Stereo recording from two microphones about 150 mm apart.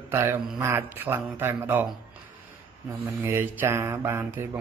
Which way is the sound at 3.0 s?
15° right (ahead or behind).